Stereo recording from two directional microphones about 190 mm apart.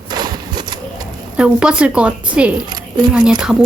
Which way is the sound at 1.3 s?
5° right (ahead or behind).